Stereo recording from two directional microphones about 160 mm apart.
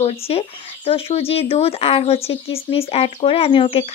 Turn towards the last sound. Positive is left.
turn(degrees=35)  # may be behind; listen again after turning